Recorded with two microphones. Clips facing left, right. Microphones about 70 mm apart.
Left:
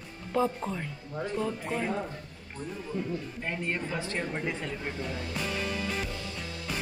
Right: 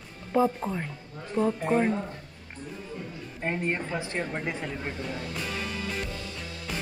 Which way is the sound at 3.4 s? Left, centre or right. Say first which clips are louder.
Right 8 dB; right.